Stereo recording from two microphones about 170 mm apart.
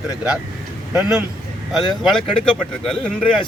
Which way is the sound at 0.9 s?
5° right (ahead or behind).